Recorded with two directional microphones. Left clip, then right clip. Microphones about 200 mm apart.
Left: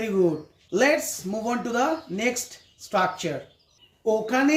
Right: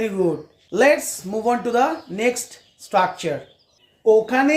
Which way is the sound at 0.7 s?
20° right (ahead or behind).